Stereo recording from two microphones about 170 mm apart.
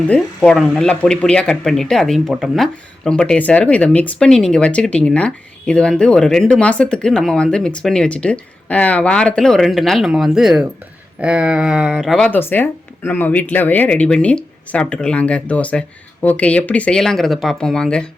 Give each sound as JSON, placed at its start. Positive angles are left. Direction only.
{"t": 0.1, "sound": "speech", "side_deg": 5}